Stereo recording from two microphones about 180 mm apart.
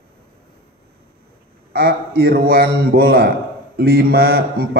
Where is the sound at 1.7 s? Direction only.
65° right (ahead or behind).